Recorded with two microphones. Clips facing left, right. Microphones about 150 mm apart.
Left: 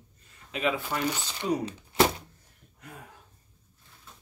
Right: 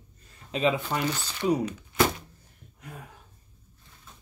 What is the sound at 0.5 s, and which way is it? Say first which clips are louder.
Speech: right 4 dB; 25° right (ahead or behind).